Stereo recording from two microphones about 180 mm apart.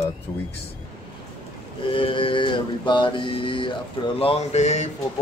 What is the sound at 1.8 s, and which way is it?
Mantra, 30° left (ahead or behind).